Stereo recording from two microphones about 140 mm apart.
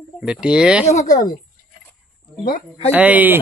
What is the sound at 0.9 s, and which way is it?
Speech, 60° left (ahead or behind).